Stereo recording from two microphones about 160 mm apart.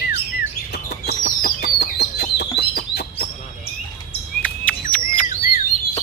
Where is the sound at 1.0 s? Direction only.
70° left (ahead or behind).